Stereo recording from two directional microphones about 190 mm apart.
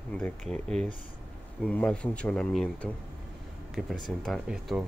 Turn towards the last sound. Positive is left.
turn(degrees=0)  # may be behind; listen again after turning